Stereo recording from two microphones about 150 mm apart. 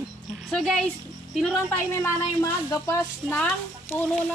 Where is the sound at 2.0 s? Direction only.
20° left (ahead or behind).